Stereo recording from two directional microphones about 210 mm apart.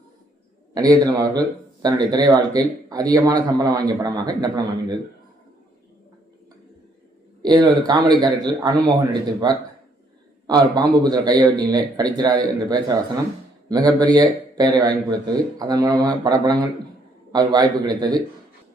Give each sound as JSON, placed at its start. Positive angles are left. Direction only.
{"t": 0.7, "sound": "speech", "side_deg": -20}
{"t": 7.4, "sound": "a man's voice", "side_deg": -20}